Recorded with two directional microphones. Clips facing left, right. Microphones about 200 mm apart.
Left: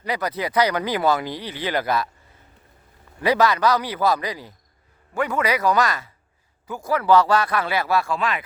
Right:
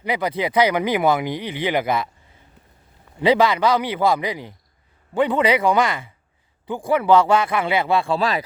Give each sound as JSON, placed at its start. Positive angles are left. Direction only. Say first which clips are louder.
{"t": 0.0, "sound": "speech", "louder": "right 3 dB", "side_deg": -25}
{"t": 3.2, "sound": "speech", "louder": "right 2 dB", "side_deg": -20}